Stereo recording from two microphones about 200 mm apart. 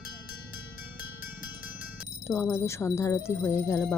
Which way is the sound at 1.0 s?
45° left (ahead or behind).